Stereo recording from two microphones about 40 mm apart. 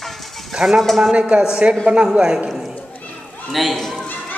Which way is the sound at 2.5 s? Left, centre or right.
Centre.